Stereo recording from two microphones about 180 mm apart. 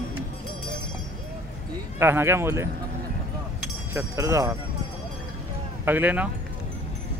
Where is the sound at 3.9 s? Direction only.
15° right (ahead or behind).